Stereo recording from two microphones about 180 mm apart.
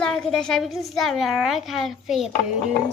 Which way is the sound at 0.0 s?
5° left (ahead or behind).